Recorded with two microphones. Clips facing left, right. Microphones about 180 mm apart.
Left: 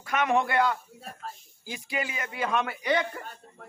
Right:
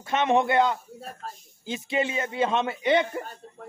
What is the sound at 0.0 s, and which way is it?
Speech, 25° right (ahead or behind).